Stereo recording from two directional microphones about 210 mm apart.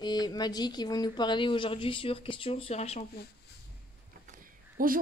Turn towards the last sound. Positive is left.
turn(degrees=-40)  # may be behind; listen again after turning